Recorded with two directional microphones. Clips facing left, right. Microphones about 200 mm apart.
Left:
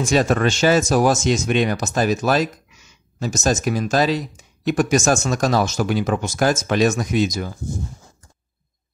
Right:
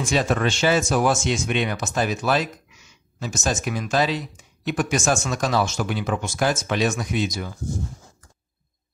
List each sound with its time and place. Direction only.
0.0 s speech: 45° left (ahead or behind)